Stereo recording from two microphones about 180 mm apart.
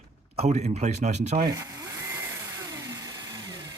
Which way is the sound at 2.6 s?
20° right (ahead or behind).